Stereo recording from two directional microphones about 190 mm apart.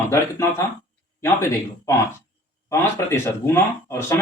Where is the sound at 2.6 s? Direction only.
15° left (ahead or behind).